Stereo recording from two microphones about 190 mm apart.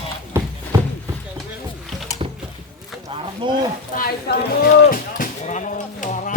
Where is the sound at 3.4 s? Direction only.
25° right (ahead or behind).